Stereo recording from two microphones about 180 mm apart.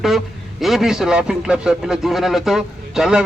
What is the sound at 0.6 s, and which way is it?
A man's voice, centre (ahead or behind).